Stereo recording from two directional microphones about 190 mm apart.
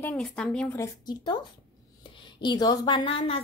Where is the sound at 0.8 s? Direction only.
20° left (ahead or behind).